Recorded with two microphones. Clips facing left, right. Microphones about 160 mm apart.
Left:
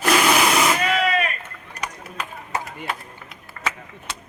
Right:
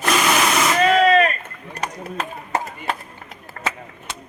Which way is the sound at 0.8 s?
40° right (ahead or behind).